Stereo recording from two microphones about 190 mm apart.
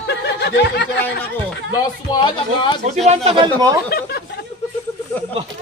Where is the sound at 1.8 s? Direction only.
20° left (ahead or behind).